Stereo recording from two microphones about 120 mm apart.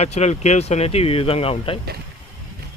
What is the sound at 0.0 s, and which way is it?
Speech, 65° left (ahead or behind).